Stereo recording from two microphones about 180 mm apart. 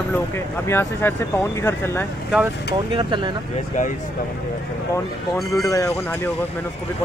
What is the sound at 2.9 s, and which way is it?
Speech, 25° right (ahead or behind).